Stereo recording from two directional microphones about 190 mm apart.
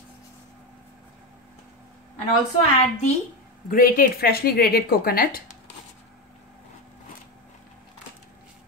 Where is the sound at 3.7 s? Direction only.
50° left (ahead or behind).